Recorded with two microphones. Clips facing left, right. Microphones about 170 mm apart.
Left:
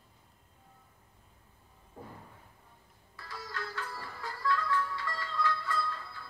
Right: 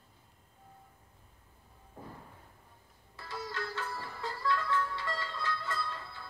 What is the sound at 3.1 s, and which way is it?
Music, 25° right (ahead or behind).